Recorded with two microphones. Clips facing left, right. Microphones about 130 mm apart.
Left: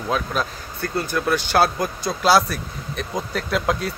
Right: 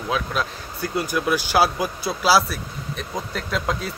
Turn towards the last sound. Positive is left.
turn(degrees=0)  # may be behind; listen again after turning